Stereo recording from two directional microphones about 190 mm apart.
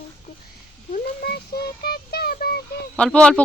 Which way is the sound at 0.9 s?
55° left (ahead or behind).